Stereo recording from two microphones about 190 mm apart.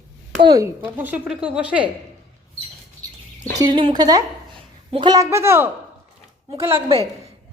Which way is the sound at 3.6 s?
25° right (ahead or behind).